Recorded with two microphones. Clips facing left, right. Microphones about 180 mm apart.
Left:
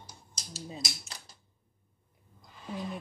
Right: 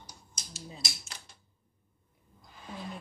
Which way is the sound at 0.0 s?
35° left (ahead or behind).